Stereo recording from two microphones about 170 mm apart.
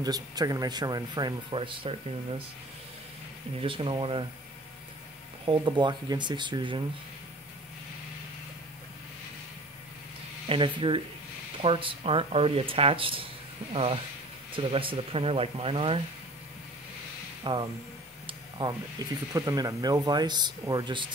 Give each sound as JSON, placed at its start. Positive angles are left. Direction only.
{"t": 0.0, "sound": "speech", "side_deg": -20}
{"t": 3.6, "sound": "speech", "side_deg": -30}
{"t": 5.4, "sound": "speech", "side_deg": -30}
{"t": 10.5, "sound": "speech", "side_deg": -30}
{"t": 14.5, "sound": "speech", "side_deg": -30}
{"t": 17.4, "sound": "speech", "side_deg": -25}
{"t": 18.2, "sound": "a sound", "side_deg": -25}
{"t": 19.0, "sound": "speech", "side_deg": -25}